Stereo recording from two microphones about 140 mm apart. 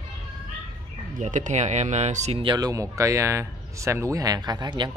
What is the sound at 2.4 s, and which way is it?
Speech, 30° right (ahead or behind).